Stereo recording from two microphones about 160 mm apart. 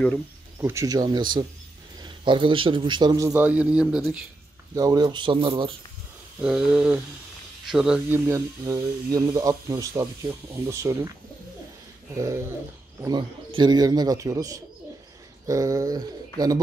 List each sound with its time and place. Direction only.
0.6 s speech: 20° right (ahead or behind)
4.7 s speech: 25° right (ahead or behind)
6.4 s speech: 5° right (ahead or behind)
8.3 s speech: 20° right (ahead or behind)
12.2 s speech: 20° right (ahead or behind)